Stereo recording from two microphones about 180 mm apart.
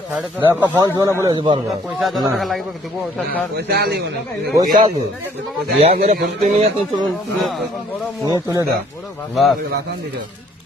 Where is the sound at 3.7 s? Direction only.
65° right (ahead or behind).